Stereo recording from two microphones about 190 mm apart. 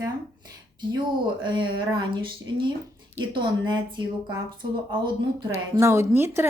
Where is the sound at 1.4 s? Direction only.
25° right (ahead or behind).